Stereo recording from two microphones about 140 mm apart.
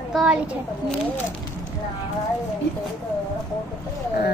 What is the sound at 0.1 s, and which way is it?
Speech, 5° right (ahead or behind).